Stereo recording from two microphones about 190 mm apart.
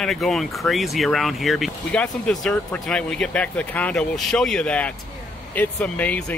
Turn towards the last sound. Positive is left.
turn(degrees=5)  # may be behind; listen again after turning